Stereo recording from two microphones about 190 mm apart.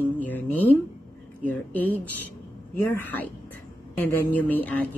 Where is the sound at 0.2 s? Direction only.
10° left (ahead or behind).